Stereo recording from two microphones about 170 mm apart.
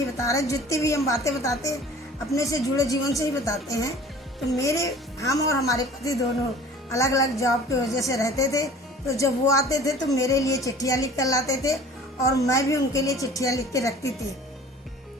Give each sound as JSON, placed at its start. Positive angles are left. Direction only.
{"t": 0.2, "sound": "a woman's voice", "side_deg": 20}